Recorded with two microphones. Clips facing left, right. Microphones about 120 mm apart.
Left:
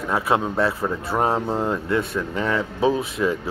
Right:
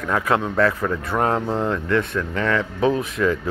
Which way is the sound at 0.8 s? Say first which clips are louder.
Right 1 dB; 30° left (ahead or behind).